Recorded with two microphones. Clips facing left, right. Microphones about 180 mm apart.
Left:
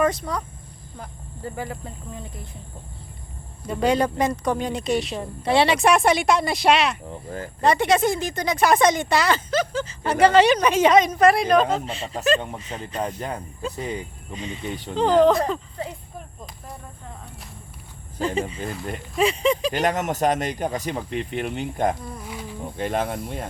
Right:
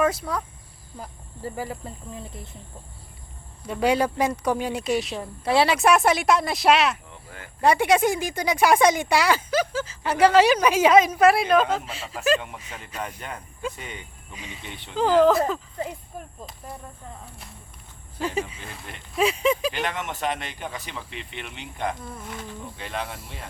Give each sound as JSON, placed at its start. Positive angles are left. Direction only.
{"t": 0.0, "sound": "speech", "side_deg": -5}
{"t": 3.7, "sound": "speech", "side_deg": -5}
{"t": 7.1, "sound": "speech", "side_deg": 40}
{"t": 7.6, "sound": "speech", "side_deg": -10}
{"t": 13.0, "sound": "speech", "side_deg": 35}
{"t": 14.3, "sound": "speech", "side_deg": -5}
{"t": 14.6, "sound": "speech", "side_deg": 40}
{"t": 14.9, "sound": "speech", "side_deg": 0}
{"t": 19.1, "sound": "speech", "side_deg": -5}
{"t": 19.7, "sound": "speech", "side_deg": 40}
{"t": 22.2, "sound": "insect", "side_deg": 5}
{"t": 22.8, "sound": "speech", "side_deg": 45}